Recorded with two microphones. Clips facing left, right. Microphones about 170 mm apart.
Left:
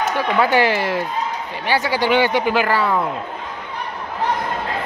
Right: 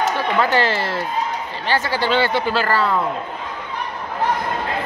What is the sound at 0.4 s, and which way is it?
Speech, 15° left (ahead or behind).